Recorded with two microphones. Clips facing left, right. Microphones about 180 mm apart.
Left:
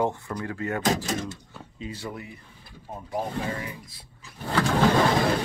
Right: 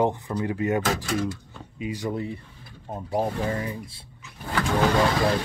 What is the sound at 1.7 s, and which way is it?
Speech, 15° right (ahead or behind).